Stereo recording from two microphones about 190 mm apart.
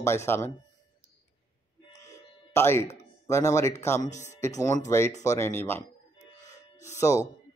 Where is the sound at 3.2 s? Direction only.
15° left (ahead or behind).